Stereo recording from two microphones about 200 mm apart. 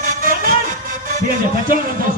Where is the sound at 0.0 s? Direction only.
40° right (ahead or behind).